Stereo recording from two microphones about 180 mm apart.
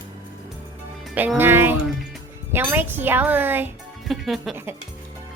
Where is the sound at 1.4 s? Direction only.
10° right (ahead or behind).